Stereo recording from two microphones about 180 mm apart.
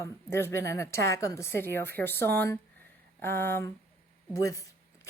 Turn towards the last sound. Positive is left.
turn(degrees=15)  # may be behind; listen again after turning